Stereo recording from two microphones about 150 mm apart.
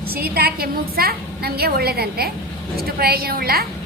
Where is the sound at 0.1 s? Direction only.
90° right.